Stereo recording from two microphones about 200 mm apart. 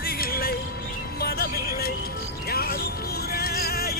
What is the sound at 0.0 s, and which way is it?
Music, 50° left (ahead or behind).